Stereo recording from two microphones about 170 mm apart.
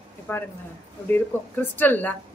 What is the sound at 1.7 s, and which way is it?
Speech, 10° left (ahead or behind).